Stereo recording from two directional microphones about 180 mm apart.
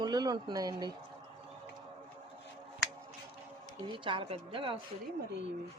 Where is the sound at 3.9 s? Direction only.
30° right (ahead or behind).